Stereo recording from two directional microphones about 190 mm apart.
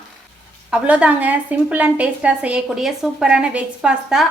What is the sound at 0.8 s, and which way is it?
A woman's voice, 5° right (ahead or behind).